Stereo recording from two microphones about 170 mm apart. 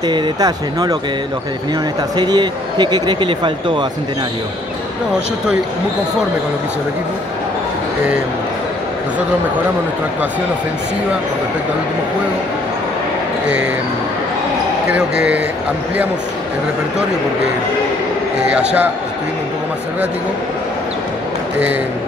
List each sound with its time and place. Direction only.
0.0 s speech: 25° right (ahead or behind)
2.1 s speech: 25° right (ahead or behind)
14.9 s speech: 5° right (ahead or behind)
18.5 s speech: 5° right (ahead or behind)